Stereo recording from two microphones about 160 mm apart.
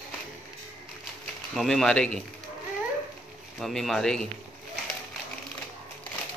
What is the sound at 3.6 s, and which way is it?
Speech, centre (ahead or behind).